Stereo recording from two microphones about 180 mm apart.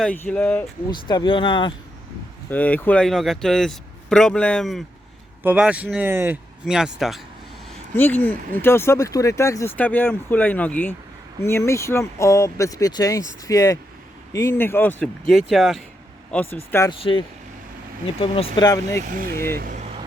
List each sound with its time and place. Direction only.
0.0 s speech: 10° left (ahead or behind)
0.9 s speech: 25° left (ahead or behind)
2.5 s speech: 10° left (ahead or behind)
5.4 s speech: 10° right (ahead or behind)
7.9 s speech: 10° left (ahead or behind)
17.0 s speech: 30° left (ahead or behind)
19.0 s speech: 50° right (ahead or behind)